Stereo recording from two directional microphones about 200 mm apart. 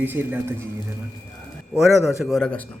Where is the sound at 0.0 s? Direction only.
10° right (ahead or behind).